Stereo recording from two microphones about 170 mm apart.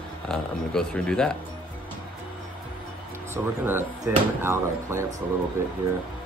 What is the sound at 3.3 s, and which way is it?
Speech, 15° right (ahead or behind).